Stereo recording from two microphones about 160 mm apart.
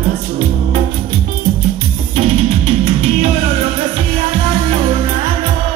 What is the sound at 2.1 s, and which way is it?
Music, 45° right (ahead or behind).